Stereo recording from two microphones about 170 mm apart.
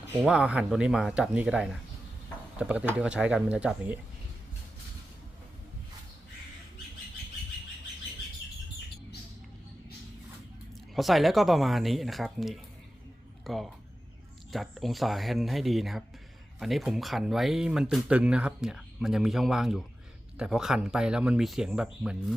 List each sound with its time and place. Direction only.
0.3 s speech: 5° right (ahead or behind)
10.9 s speech: centre (ahead or behind)